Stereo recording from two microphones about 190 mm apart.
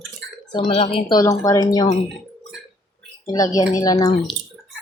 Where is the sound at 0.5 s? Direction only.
30° left (ahead or behind).